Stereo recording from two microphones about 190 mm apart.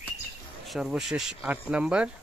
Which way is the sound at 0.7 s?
5° right (ahead or behind).